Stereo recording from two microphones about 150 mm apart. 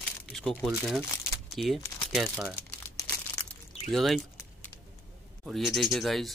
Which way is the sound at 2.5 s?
15° left (ahead or behind).